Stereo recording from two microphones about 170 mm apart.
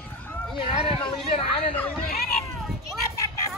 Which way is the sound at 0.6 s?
30° left (ahead or behind).